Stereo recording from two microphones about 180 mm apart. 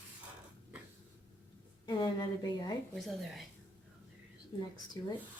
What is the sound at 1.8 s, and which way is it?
Speech, 25° left (ahead or behind).